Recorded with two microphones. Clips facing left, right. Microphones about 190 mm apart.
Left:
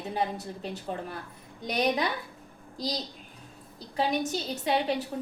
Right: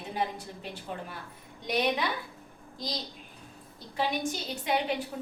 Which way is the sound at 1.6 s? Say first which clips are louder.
Left 1 dB; 40° left (ahead or behind).